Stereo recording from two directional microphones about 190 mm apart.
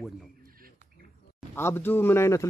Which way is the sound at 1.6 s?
10° left (ahead or behind).